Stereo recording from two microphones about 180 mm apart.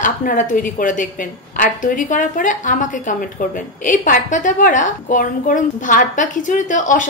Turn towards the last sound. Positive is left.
turn(degrees=45)  # may be behind; listen again after turning